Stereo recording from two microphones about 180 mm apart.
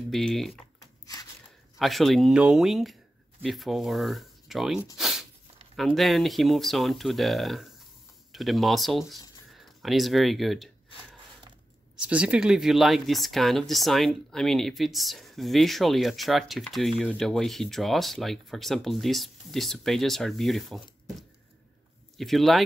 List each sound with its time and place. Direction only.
0.1 s speech: centre (ahead or behind)
0.7 s a sound: 20° left (ahead or behind)
1.8 s speech: centre (ahead or behind)
4.9 s a sound: centre (ahead or behind)
5.8 s speech: centre (ahead or behind)
12.0 s speech: 5° right (ahead or behind)